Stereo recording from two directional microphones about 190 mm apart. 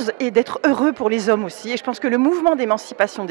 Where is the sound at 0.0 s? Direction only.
10° right (ahead or behind).